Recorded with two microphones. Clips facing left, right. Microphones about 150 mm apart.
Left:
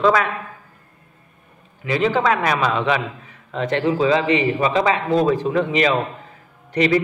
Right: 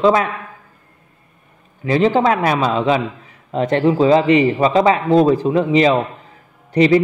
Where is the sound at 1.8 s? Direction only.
35° right (ahead or behind).